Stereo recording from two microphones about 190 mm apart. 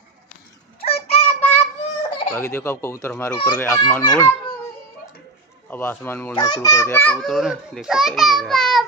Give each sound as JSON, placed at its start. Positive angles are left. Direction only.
{"t": 0.7, "sound": "a sound", "side_deg": 30}
{"t": 2.3, "sound": "speech", "side_deg": 15}
{"t": 5.7, "sound": "a child's voice", "side_deg": 10}